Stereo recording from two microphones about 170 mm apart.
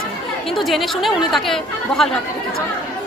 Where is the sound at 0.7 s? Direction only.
Centre (ahead or behind).